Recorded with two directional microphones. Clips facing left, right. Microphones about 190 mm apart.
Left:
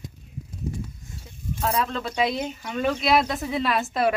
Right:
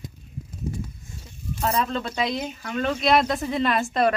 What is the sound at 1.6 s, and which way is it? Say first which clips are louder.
A woman's voice: right 1 dB; centre (ahead or behind).